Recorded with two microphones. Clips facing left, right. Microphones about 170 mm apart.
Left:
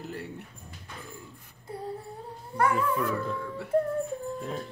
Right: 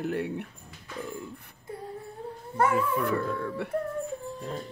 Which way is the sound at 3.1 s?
65° right (ahead or behind).